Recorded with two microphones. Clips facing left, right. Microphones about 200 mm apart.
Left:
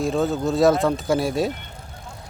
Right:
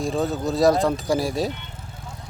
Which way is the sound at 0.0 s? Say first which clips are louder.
Left 2 dB; centre (ahead or behind).